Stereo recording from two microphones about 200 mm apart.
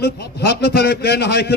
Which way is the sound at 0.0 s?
55° left (ahead or behind).